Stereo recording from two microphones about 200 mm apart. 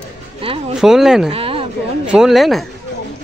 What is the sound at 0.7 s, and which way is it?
Speech, 5° right (ahead or behind).